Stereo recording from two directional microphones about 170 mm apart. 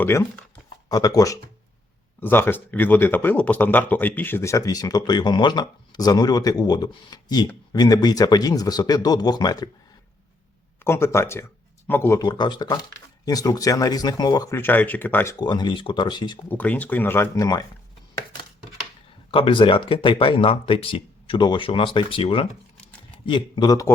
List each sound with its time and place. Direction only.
0.0 s speech: 15° left (ahead or behind)
10.8 s speech: 15° left (ahead or behind)
12.2 s speech: 25° left (ahead or behind)
15.4 s speech: 25° left (ahead or behind)
16.5 s speech: 10° left (ahead or behind)
19.3 s speech: 30° left (ahead or behind)